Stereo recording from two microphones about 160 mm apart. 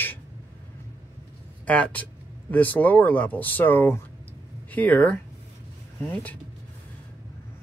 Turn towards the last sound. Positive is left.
turn(degrees=10)  # may be behind; listen again after turning